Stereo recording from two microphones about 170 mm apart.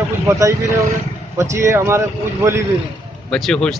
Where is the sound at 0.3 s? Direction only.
15° right (ahead or behind).